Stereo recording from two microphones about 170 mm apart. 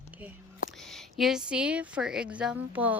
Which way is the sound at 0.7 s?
Centre (ahead or behind).